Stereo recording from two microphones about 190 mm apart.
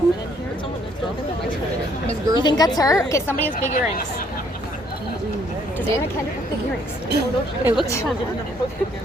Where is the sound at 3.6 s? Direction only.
45° left (ahead or behind).